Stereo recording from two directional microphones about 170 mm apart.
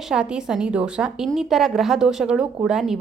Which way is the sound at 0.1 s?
5° right (ahead or behind).